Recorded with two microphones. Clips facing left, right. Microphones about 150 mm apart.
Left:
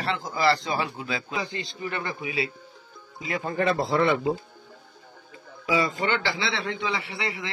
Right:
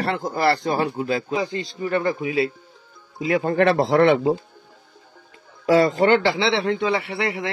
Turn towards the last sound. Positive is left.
turn(degrees=-60)  # may be behind; listen again after turning